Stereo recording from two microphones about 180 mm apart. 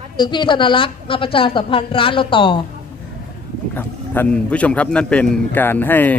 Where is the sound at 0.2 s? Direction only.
25° left (ahead or behind).